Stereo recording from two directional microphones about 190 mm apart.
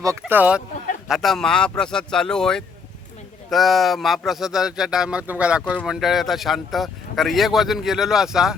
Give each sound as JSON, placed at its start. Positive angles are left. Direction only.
{"t": 0.0, "sound": "speech", "side_deg": -15}